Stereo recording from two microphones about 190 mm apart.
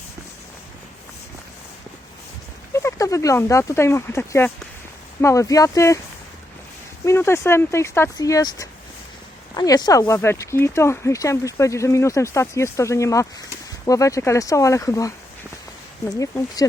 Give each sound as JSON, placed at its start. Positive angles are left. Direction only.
{"t": 2.7, "sound": "speech", "side_deg": 15}
{"t": 7.0, "sound": "speech", "side_deg": 15}
{"t": 16.1, "sound": "speech", "side_deg": 15}